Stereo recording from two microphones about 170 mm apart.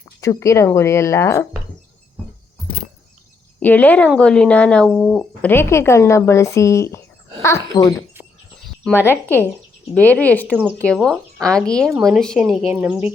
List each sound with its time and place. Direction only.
0.2 s speech: 15° left (ahead or behind)
3.6 s a child's voice: 10° left (ahead or behind)
9.0 s a woman's voice: 10° left (ahead or behind)
12.6 s a woman's voice: 10° right (ahead or behind)